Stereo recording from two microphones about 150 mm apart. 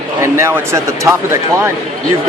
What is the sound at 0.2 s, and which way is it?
Speech, 20° right (ahead or behind).